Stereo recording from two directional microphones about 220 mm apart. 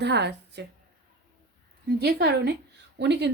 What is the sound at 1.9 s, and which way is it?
A woman's voice, 45° right (ahead or behind).